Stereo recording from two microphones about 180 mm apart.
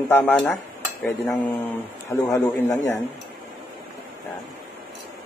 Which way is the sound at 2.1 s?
15° left (ahead or behind).